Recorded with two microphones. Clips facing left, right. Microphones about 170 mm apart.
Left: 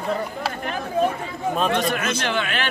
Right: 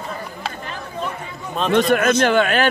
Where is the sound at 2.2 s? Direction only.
50° right (ahead or behind).